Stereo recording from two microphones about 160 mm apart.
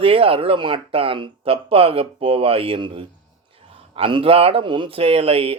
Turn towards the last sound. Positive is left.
turn(degrees=-35)  # may be behind; listen again after turning